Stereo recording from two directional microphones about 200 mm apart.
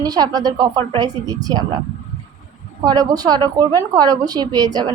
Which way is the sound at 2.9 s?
20° right (ahead or behind).